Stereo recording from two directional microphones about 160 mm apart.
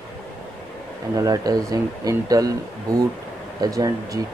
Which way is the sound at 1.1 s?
20° right (ahead or behind).